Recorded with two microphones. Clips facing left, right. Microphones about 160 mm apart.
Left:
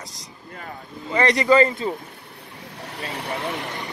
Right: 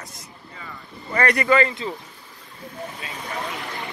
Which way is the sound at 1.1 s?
20° left (ahead or behind).